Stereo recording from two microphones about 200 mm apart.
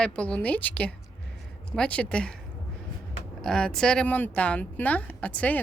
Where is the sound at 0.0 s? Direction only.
5° left (ahead or behind).